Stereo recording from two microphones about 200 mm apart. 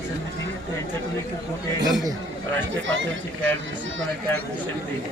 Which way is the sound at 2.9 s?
70° right (ahead or behind).